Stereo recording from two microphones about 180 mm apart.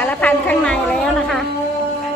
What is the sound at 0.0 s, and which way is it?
A woman's voice, 10° left (ahead or behind).